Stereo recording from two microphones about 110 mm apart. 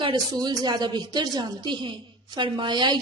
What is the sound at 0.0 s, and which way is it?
A woman's voice, 40° right (ahead or behind).